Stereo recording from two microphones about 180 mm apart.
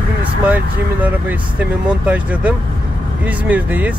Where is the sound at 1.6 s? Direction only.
10° right (ahead or behind).